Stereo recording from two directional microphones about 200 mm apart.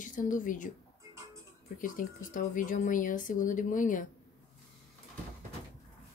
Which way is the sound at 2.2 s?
40° left (ahead or behind).